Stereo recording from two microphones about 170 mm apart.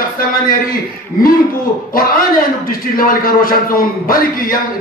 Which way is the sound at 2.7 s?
55° left (ahead or behind).